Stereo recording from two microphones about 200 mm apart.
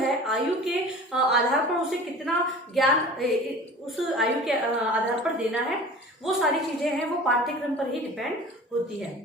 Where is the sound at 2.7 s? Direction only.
Centre (ahead or behind).